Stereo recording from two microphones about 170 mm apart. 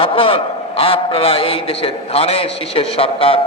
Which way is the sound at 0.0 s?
35° left (ahead or behind).